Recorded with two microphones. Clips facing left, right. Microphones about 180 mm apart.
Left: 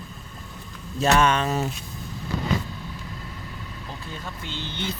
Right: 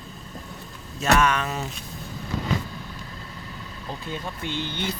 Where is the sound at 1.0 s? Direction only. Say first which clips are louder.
Left 1 dB; 30° left (ahead or behind).